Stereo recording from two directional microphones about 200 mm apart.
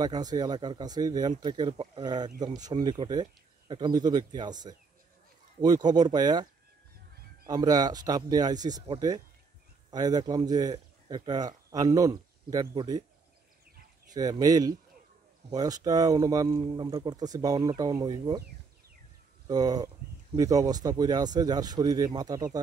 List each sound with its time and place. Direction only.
0.0 s speech: 20° right (ahead or behind)
7.4 s speech: 20° right (ahead or behind)
9.8 s speech: 20° right (ahead or behind)
14.1 s speech: 20° right (ahead or behind)
19.4 s speech: 20° right (ahead or behind)